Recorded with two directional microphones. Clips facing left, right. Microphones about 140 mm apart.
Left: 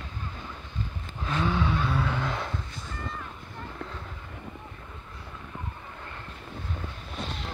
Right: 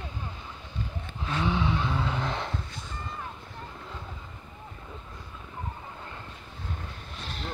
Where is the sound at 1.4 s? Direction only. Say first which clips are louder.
Even; 20° right (ahead or behind).